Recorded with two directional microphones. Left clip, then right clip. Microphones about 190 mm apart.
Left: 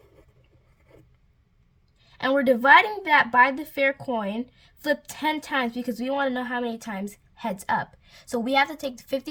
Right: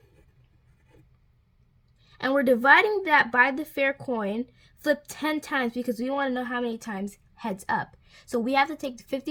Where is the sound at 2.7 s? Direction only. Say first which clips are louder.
Left 2 dB; 30° left (ahead or behind).